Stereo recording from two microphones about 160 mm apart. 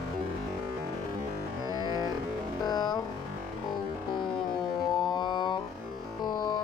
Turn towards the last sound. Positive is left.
turn(degrees=30)  # may be behind; listen again after turning